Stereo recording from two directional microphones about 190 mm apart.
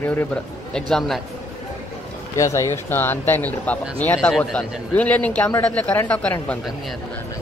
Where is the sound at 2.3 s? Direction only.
15° left (ahead or behind).